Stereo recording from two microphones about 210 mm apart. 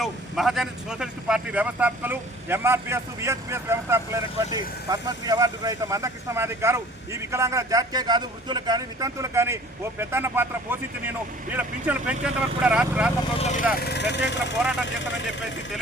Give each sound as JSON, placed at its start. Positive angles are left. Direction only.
{"t": 0.0, "sound": "speech", "side_deg": 0}
{"t": 13.4, "sound": "speech", "side_deg": 35}
{"t": 13.7, "sound": "speech", "side_deg": 50}